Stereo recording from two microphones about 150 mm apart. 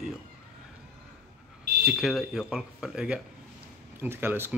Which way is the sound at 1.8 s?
5° right (ahead or behind).